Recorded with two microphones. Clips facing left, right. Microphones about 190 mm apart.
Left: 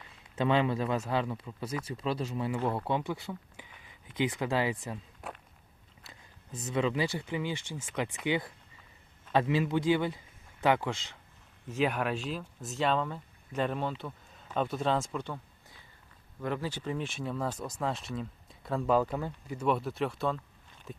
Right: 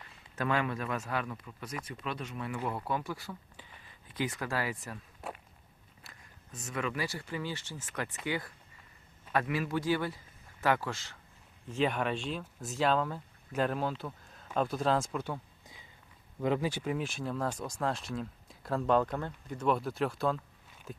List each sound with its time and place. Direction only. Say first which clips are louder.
0.3 s speech: left 4 dB; 25° left (ahead or behind)
5.2 s walk: right 2 dB; centre (ahead or behind)
6.1 s speech: left 5 dB; 30° left (ahead or behind)
11.8 s speech: left 1 dB; 5° left (ahead or behind)